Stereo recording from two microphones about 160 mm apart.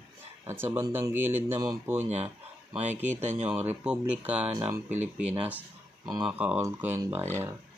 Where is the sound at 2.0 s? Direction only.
45° right (ahead or behind).